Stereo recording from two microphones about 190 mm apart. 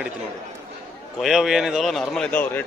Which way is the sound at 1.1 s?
Centre (ahead or behind).